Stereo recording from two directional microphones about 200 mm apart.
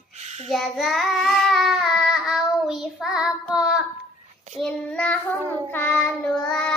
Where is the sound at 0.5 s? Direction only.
Centre (ahead or behind).